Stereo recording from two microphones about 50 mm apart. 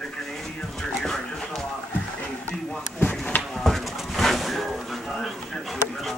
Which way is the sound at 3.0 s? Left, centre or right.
Left.